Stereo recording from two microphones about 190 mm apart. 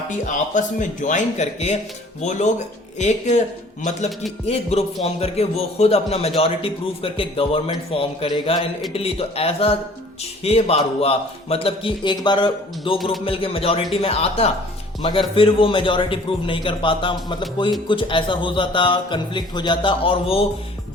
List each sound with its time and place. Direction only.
0.3 s a man's voice: 40° left (ahead or behind)
3.0 s a man's voice: 40° left (ahead or behind)
4.4 s a man's voice: 30° left (ahead or behind)